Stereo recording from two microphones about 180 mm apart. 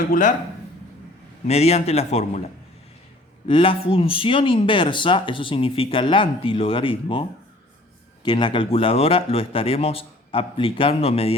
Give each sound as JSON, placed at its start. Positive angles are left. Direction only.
{"t": 0.1, "sound": "speech", "side_deg": 45}
{"t": 1.5, "sound": "speech", "side_deg": 35}
{"t": 3.4, "sound": "speech", "side_deg": 30}